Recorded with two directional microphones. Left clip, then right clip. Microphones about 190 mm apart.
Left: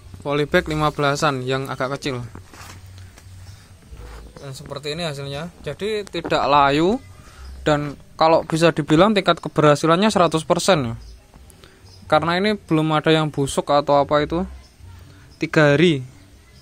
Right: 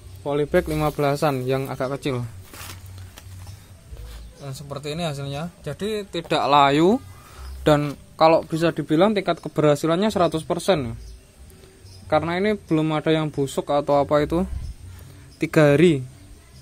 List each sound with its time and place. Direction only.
0.2 s speech: 20° left (ahead or behind)
0.7 s speech: centre (ahead or behind)
4.4 s a man's voice: centre (ahead or behind); by 8.0 s 15° right (ahead or behind)
8.2 s speech: 5° left (ahead or behind)
8.5 s speech: 20° left (ahead or behind)
12.1 s speech: 15° left (ahead or behind); by 16.0 s 5° right (ahead or behind)